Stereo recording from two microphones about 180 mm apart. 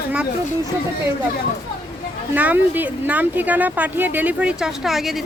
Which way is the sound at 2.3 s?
10° right (ahead or behind).